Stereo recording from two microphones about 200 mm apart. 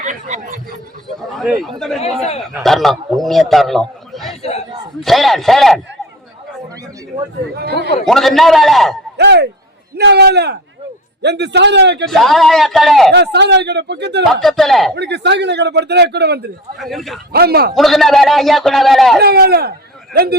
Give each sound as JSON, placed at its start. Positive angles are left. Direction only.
{"t": 0.0, "sound": "speech", "side_deg": -35}
{"t": 1.0, "sound": "a man's voice", "side_deg": 0}
{"t": 7.5, "sound": "speech", "side_deg": -55}
{"t": 8.0, "sound": "a man's voice", "side_deg": 0}
{"t": 9.1, "sound": "a man's voice", "side_deg": -55}
{"t": 12.0, "sound": "a man's voice", "side_deg": 0}
{"t": 13.1, "sound": "a man's voice", "side_deg": -60}
{"t": 14.4, "sound": "a man's voice", "side_deg": 0}
{"t": 14.9, "sound": "a man's voice", "side_deg": -60}
{"t": 16.7, "sound": "a man's voice", "side_deg": 0}
{"t": 17.3, "sound": "speech", "side_deg": -50}
{"t": 17.7, "sound": "a man's voice", "side_deg": 0}
{"t": 19.2, "sound": "speech", "side_deg": -50}